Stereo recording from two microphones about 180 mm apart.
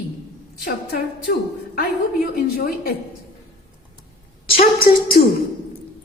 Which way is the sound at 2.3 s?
55° left (ahead or behind).